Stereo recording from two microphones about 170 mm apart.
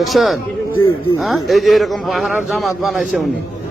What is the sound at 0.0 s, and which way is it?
A man's voice, centre (ahead or behind).